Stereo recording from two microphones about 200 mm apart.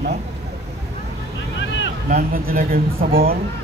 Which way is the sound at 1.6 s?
65° left (ahead or behind).